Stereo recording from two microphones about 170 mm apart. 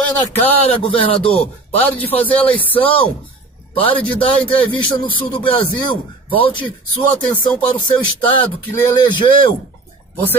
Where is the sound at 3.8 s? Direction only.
30° left (ahead or behind).